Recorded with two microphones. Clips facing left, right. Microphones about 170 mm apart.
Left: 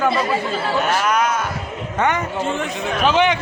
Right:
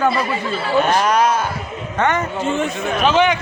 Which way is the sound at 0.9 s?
35° right (ahead or behind).